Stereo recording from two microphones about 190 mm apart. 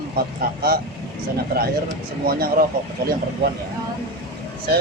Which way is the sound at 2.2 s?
50° right (ahead or behind).